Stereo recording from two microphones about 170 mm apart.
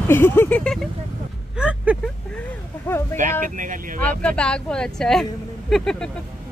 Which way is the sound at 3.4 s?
50° right (ahead or behind).